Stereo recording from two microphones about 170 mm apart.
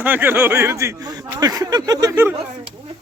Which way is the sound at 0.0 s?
10° right (ahead or behind).